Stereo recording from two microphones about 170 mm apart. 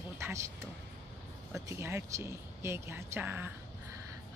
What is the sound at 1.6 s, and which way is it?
A woman's voice, 15° right (ahead or behind).